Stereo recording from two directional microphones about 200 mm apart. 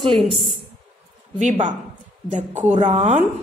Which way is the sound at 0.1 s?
Centre (ahead or behind).